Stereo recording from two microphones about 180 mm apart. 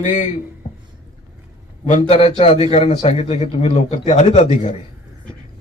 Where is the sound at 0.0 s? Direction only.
45° left (ahead or behind).